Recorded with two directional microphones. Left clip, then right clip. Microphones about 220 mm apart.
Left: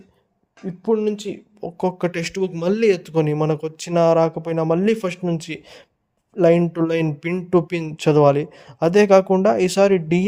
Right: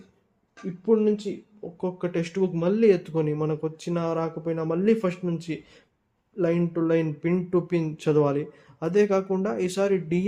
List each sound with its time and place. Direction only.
0.8 s speech: 45° left (ahead or behind)